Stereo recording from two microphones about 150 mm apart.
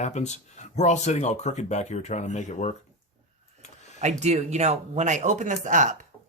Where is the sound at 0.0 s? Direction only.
50° left (ahead or behind).